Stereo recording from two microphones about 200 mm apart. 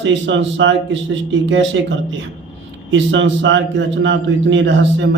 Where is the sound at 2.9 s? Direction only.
65° right (ahead or behind).